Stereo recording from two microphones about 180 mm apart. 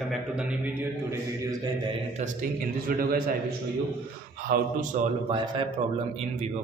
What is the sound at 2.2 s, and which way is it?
Speech, 40° right (ahead or behind).